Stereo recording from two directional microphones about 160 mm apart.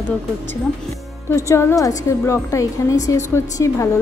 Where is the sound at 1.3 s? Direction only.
20° left (ahead or behind).